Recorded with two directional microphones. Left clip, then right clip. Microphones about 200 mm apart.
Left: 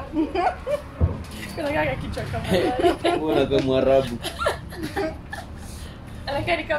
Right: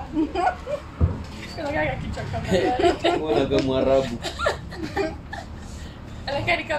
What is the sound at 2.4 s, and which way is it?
Speech, 15° left (ahead or behind).